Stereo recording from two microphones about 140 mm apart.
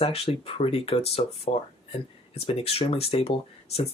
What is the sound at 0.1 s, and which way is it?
Speech, 40° left (ahead or behind).